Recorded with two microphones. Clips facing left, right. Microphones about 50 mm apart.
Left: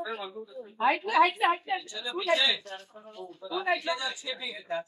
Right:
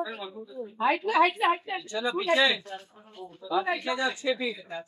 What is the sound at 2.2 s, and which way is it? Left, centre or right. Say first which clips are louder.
Speech: right 2 dB; right.